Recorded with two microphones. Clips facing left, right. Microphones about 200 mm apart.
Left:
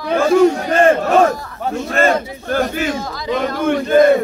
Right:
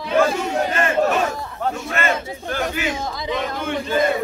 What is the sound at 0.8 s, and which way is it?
Speech, 45° left (ahead or behind).